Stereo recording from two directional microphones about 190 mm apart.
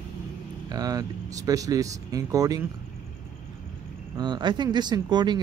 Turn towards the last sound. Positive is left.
turn(degrees=-20)  # may be behind; listen again after turning